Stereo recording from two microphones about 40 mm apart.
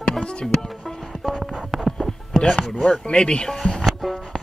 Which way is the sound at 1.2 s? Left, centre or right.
Centre.